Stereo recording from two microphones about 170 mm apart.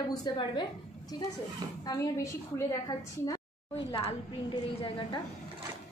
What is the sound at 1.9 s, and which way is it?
Speech, 20° left (ahead or behind).